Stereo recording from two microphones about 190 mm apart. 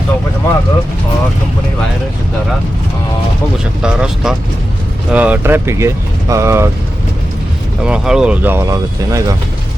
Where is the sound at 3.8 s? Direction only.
5° right (ahead or behind).